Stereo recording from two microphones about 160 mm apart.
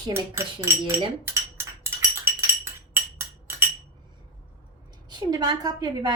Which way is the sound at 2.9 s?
15° right (ahead or behind).